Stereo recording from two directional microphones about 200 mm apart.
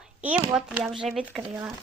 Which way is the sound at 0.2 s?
10° right (ahead or behind).